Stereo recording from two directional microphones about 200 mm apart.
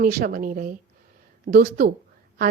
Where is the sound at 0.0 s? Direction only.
45° right (ahead or behind).